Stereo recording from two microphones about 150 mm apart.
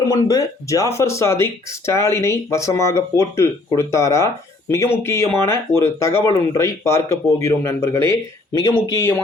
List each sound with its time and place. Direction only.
0.1 s speech: 20° left (ahead or behind)